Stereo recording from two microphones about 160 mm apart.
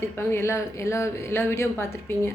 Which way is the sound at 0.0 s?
15° left (ahead or behind).